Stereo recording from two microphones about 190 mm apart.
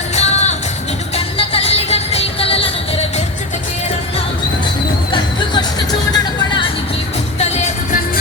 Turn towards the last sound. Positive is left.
turn(degrees=35)  # may be behind; listen again after turning